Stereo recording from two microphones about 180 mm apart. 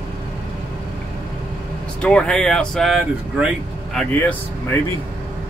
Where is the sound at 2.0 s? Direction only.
5° left (ahead or behind).